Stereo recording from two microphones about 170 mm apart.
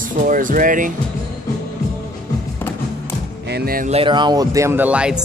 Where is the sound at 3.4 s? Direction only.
65° right (ahead or behind).